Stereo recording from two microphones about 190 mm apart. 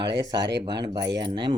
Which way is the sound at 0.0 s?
65° right (ahead or behind).